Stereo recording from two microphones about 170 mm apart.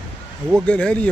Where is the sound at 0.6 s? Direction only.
5° left (ahead or behind).